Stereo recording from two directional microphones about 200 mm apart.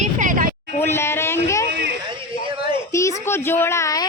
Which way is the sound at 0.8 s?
10° left (ahead or behind).